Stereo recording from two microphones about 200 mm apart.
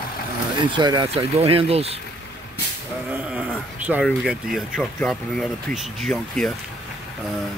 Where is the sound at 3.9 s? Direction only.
Centre (ahead or behind).